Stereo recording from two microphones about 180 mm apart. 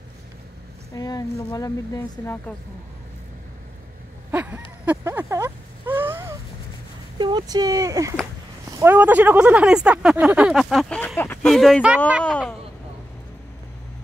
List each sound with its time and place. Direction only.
0.9 s a woman's voice: 20° left (ahead or behind)
4.3 s a sound: 10° right (ahead or behind)
7.2 s speech: 25° right (ahead or behind); by 12.5 s 5° left (ahead or behind)